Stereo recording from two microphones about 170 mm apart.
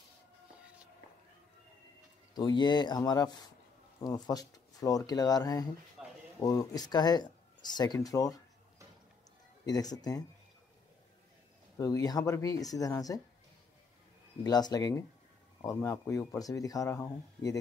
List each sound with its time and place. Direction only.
2.3 s speech: 25° left (ahead or behind)
6.0 s a sound: 5° right (ahead or behind)
6.4 s speech: 20° left (ahead or behind)
9.7 s speech: 20° left (ahead or behind)
11.8 s speech: 20° left (ahead or behind)
14.4 s speech: 25° left (ahead or behind)